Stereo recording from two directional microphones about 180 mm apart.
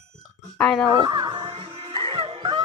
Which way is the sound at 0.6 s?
5° left (ahead or behind).